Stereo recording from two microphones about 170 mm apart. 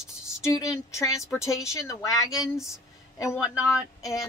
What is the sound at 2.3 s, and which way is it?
Speech, centre (ahead or behind).